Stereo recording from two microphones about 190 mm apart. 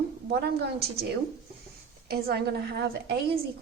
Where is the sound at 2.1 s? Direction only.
55° right (ahead or behind).